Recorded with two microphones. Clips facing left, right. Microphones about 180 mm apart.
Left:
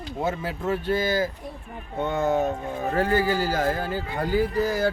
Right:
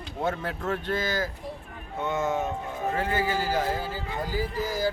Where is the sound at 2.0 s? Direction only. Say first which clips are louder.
Left 4 dB; 35° left (ahead or behind).